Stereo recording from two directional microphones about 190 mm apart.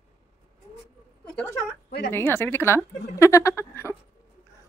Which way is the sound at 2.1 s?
10° left (ahead or behind).